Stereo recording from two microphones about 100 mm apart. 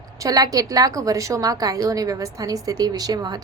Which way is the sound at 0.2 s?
35° right (ahead or behind).